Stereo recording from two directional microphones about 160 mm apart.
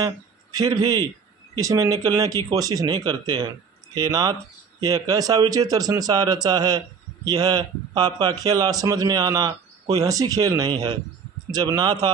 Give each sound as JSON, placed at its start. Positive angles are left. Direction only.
{"t": 0.0, "sound": "a man's voice", "side_deg": -20}